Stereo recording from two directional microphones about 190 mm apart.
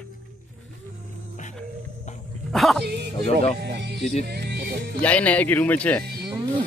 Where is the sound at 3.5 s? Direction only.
65° right (ahead or behind).